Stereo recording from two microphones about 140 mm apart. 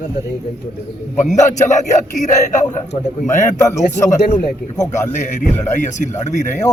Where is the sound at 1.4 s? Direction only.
60° left (ahead or behind).